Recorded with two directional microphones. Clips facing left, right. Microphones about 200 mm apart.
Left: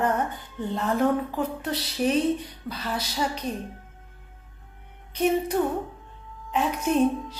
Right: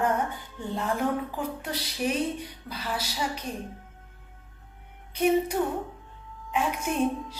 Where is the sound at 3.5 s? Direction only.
40° left (ahead or behind).